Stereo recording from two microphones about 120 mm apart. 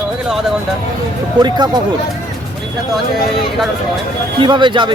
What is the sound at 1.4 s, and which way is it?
Speech, 35° right (ahead or behind).